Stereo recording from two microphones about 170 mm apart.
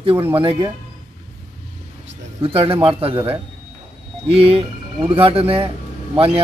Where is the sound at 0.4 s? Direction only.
30° right (ahead or behind).